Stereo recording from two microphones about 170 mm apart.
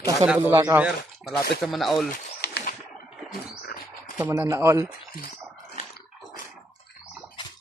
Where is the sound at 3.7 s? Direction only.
50° left (ahead or behind).